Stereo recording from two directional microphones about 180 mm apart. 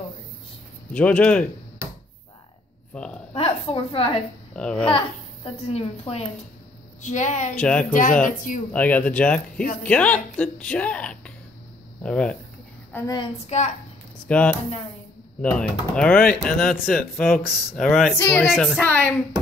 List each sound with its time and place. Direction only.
0.9 s speech: 5° left (ahead or behind)
2.9 s speech: 5° left (ahead or behind)
3.3 s a woman's voice: 30° left (ahead or behind)
4.6 s speech: 5° left (ahead or behind)
4.9 s a woman's voice: 35° left (ahead or behind)
7.5 s speech: 5° left (ahead or behind)
7.9 s a woman's voice: 45° left (ahead or behind)
8.7 s speech: 10° left (ahead or behind)
12.9 s a woman's voice: 15° left (ahead or behind)
13.2 s a woman's voice: 40° left (ahead or behind)
14.2 s speech: 5° left (ahead or behind)
18.1 s speech: 15° left (ahead or behind)